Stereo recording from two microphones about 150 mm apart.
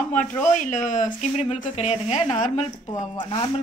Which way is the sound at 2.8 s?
35° left (ahead or behind).